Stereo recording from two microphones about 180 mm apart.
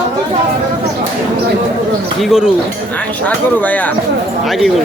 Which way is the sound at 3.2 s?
10° left (ahead or behind).